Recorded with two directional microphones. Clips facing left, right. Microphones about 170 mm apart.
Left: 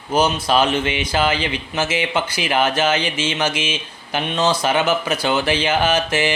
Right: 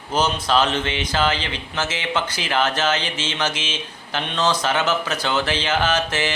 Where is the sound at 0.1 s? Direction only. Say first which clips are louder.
Left 3 dB; 10° left (ahead or behind).